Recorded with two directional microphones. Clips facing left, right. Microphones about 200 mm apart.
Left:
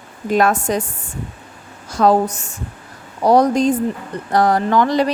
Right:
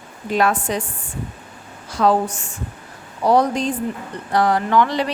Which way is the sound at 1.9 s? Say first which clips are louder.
Left 3 dB; 40° left (ahead or behind).